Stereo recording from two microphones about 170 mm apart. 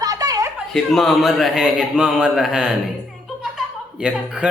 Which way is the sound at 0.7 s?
Centre (ahead or behind).